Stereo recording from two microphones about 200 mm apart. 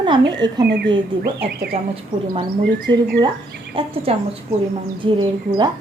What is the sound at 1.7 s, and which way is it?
Speech, 30° right (ahead or behind).